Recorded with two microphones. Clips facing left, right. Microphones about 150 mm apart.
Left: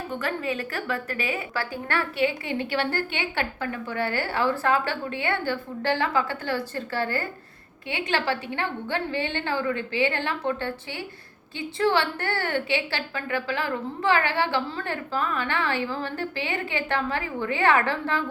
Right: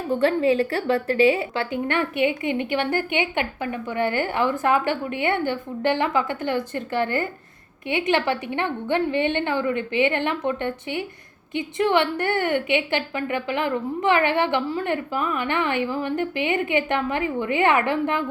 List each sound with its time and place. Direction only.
0.1 s a woman's voice: 30° right (ahead or behind)